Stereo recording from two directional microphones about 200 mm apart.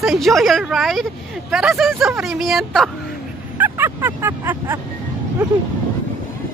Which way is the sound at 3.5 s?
10° right (ahead or behind).